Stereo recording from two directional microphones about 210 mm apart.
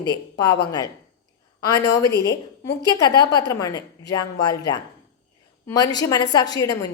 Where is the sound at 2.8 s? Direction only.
20° left (ahead or behind).